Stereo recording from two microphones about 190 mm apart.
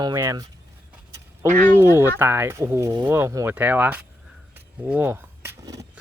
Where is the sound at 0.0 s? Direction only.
20° right (ahead or behind).